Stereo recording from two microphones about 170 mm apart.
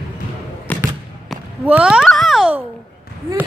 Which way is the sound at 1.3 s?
5° right (ahead or behind).